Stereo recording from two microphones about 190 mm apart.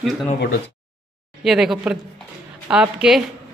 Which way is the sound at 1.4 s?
Centre (ahead or behind).